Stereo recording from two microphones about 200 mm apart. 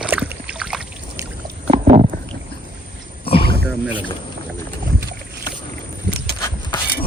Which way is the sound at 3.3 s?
25° left (ahead or behind).